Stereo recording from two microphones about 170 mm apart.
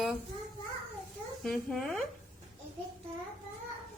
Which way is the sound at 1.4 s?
Centre (ahead or behind).